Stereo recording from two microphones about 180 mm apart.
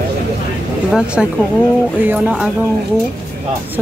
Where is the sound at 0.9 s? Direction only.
5° right (ahead or behind).